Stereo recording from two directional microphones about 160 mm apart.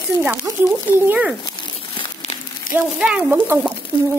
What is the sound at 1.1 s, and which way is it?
Speech, 5° right (ahead or behind).